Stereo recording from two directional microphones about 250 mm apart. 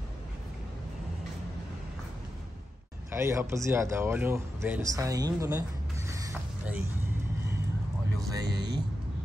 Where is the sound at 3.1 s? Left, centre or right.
Centre.